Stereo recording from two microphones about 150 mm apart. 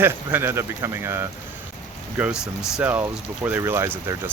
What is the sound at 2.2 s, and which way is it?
Speech, 5° right (ahead or behind).